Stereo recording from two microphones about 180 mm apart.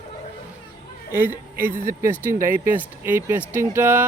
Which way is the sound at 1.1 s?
10° right (ahead or behind).